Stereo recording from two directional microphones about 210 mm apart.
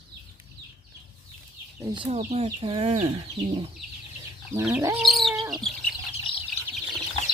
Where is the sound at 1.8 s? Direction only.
20° right (ahead or behind).